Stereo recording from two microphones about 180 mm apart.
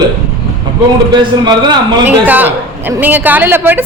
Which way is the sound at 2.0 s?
10° right (ahead or behind).